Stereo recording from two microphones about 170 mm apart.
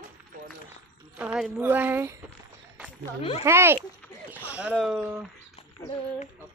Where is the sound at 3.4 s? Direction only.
15° right (ahead or behind).